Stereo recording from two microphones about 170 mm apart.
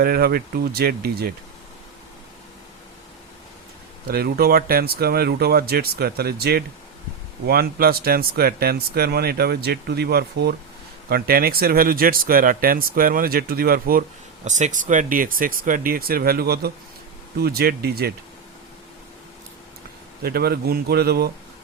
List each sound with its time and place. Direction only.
0.0 s speech: 65° right (ahead or behind)
4.1 s speech: 65° right (ahead or behind)
14.4 s speech: 45° right (ahead or behind); by 18.1 s 65° right (ahead or behind)
20.2 s speech: 65° right (ahead or behind)